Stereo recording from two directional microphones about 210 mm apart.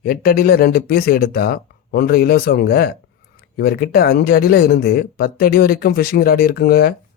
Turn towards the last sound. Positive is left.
turn(degrees=45)  # may be behind; listen again after turning